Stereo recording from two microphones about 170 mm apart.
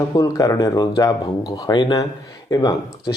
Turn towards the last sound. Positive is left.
turn(degrees=25)  # may be behind; listen again after turning